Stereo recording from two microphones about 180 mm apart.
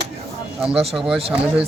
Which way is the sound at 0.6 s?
Centre (ahead or behind).